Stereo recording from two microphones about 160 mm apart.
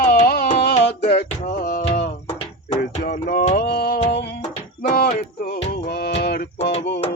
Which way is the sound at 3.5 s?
85° left.